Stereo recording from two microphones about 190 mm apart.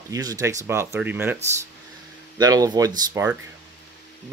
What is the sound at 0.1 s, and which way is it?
Speech, 20° right (ahead or behind).